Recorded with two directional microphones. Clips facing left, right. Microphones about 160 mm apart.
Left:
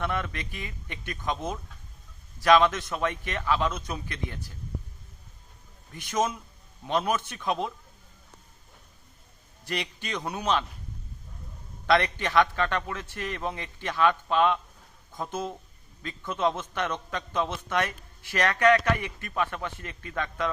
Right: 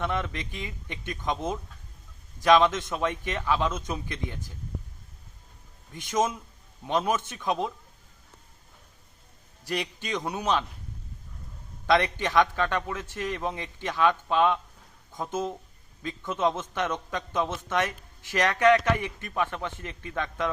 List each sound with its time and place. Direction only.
0.0 s a man's voice: 15° right (ahead or behind)
5.9 s a man's voice: 20° right (ahead or behind)
9.6 s a man's voice: 15° right (ahead or behind)
11.9 s a man's voice: 15° right (ahead or behind)
16.4 s a man's voice: 15° right (ahead or behind)